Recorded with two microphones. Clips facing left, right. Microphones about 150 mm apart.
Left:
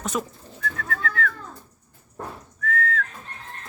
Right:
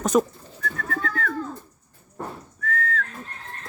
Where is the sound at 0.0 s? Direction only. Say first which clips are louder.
Right 8 dB; 40° right (ahead or behind).